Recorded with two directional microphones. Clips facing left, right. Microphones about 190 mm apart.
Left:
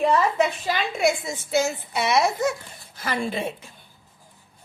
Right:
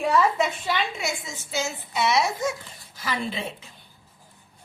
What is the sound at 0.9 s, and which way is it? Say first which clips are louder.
A woman's voice: left 9 dB; 55° left (ahead or behind).